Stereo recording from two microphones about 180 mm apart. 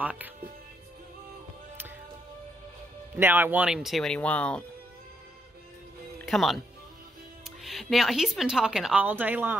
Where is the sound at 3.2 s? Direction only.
10° right (ahead or behind); by 4.7 s 5° left (ahead or behind).